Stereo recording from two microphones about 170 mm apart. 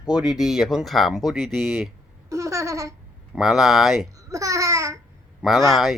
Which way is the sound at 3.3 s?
Centre (ahead or behind).